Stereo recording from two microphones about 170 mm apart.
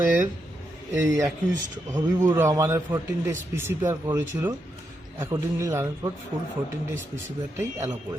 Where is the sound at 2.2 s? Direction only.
20° right (ahead or behind).